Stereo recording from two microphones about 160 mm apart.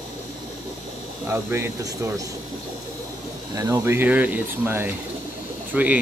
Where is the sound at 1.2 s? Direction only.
15° right (ahead or behind).